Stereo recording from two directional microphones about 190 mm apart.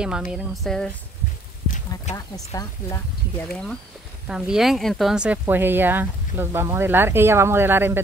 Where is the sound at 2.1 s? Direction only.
20° left (ahead or behind).